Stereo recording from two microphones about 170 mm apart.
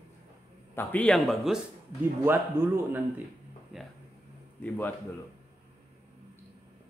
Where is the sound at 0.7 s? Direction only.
5° left (ahead or behind).